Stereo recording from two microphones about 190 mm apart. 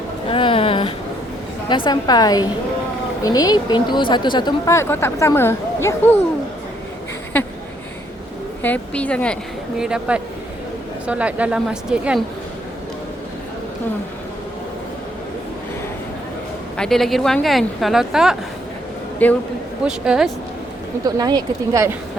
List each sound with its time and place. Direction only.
0.3 s a sound: 30° left (ahead or behind)
1.7 s a woman's voice: 25° left (ahead or behind)
8.6 s a woman's voice: 5° left (ahead or behind)
16.7 s a woman's voice: 5° left (ahead or behind)
19.2 s speech: 10° left (ahead or behind)
19.8 s a woman's voice: 5° right (ahead or behind)
21.2 s speech: 20° right (ahead or behind)